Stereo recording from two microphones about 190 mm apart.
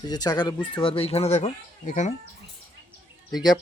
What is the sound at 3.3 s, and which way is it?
Speech, 20° left (ahead or behind).